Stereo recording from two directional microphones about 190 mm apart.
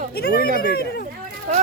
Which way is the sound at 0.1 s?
55° left (ahead or behind).